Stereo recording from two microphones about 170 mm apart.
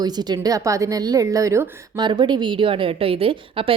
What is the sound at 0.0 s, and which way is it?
A woman's voice, 25° right (ahead or behind).